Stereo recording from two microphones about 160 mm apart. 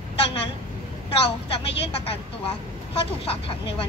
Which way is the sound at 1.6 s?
35° left (ahead or behind).